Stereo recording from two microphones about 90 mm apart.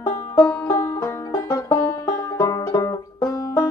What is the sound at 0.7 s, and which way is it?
Banjo, 25° left (ahead or behind).